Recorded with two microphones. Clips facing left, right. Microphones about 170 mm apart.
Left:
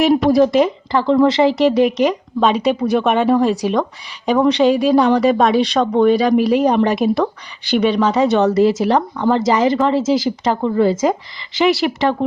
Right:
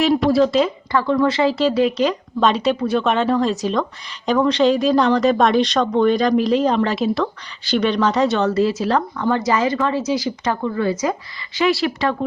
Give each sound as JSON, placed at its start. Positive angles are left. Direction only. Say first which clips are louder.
{"t": 0.0, "sound": "speech", "louder": "left 3 dB", "side_deg": 15}